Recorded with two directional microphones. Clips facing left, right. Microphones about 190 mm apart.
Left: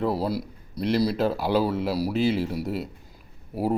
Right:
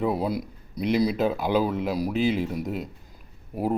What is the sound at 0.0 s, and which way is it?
Speech, centre (ahead or behind).